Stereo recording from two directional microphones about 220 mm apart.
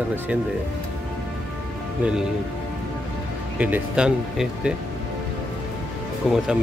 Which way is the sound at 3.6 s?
5° right (ahead or behind).